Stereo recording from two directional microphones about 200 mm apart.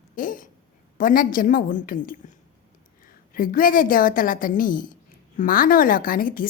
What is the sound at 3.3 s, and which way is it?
A woman's voice, 45° left (ahead or behind).